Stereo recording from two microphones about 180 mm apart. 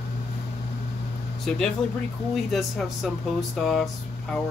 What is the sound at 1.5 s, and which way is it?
Speech, centre (ahead or behind).